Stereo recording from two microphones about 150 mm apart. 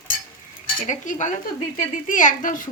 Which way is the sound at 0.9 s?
55° left (ahead or behind).